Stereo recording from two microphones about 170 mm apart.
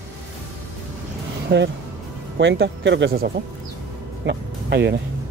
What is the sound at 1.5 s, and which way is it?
Speech, 90° right.